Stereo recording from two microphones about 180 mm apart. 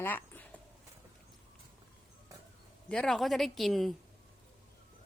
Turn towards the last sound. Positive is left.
turn(degrees=0)  # may be behind; listen again after turning